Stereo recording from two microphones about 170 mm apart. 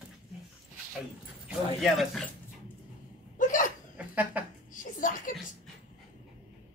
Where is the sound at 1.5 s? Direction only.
Centre (ahead or behind).